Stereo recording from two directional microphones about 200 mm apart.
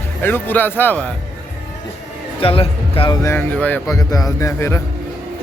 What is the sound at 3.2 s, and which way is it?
Speech, 10° left (ahead or behind).